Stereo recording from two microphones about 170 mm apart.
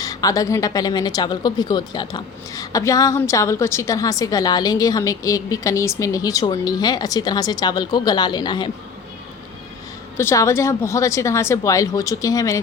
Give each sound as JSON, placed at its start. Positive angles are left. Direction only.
{"t": 0.0, "sound": "speech", "side_deg": 20}
{"t": 10.2, "sound": "a woman's voice", "side_deg": 15}